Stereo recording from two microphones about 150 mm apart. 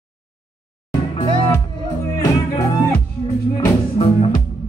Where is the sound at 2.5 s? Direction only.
25° left (ahead or behind).